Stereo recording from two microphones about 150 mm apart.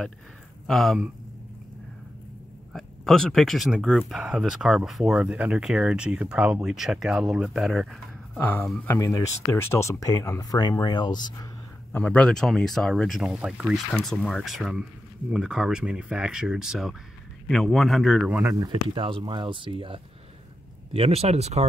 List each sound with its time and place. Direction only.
0.7 s speech: centre (ahead or behind)
2.7 s speech: 5° left (ahead or behind)
8.8 s speech: 20° left (ahead or behind)
11.9 s speech: 10° left (ahead or behind)
18.4 s speech: 25° right (ahead or behind)
18.9 s speech: 35° right (ahead or behind)